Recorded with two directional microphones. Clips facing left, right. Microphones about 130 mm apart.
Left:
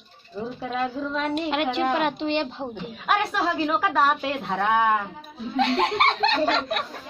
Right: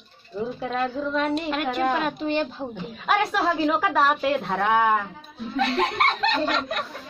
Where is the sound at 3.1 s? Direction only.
5° left (ahead or behind).